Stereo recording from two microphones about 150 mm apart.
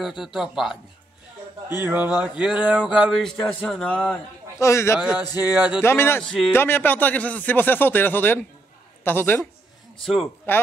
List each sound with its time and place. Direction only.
0.2 s speech: centre (ahead or behind)
1.8 s speech: 10° right (ahead or behind); by 4.2 s 10° left (ahead or behind)
4.6 s a man's voice: 20° left (ahead or behind)
4.9 s speech: 10° right (ahead or behind)
5.8 s a man's voice: 15° left (ahead or behind)
6.2 s speech: centre (ahead or behind)
6.5 s a man's voice: 15° left (ahead or behind)
10.0 s speech: 5° right (ahead or behind)